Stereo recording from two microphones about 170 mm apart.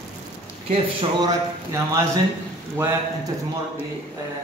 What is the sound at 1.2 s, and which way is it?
Speech, 20° right (ahead or behind).